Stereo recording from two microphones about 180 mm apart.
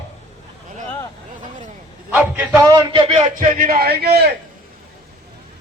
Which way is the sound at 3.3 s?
50° right (ahead or behind).